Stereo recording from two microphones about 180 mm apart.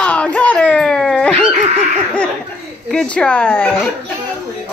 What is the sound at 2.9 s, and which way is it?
Speech, 5° left (ahead or behind).